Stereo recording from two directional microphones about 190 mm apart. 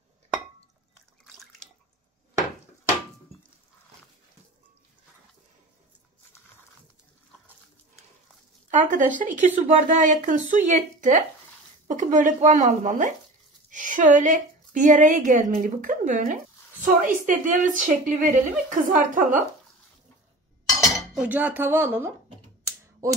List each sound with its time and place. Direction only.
1.2 s water: centre (ahead or behind)
8.6 s a woman's voice: 40° right (ahead or behind)
20.7 s speech: centre (ahead or behind)